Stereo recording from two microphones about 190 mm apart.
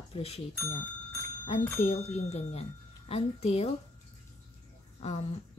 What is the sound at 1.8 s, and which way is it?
Speech, 35° left (ahead or behind).